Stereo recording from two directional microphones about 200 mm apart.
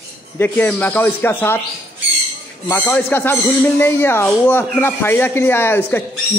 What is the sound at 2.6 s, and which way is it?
Speech, 10° left (ahead or behind).